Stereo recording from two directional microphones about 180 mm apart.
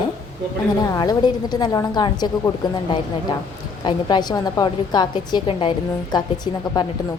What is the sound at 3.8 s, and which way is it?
Speech, 25° left (ahead or behind).